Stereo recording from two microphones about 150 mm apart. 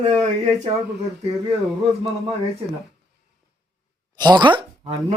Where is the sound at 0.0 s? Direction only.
45° right (ahead or behind).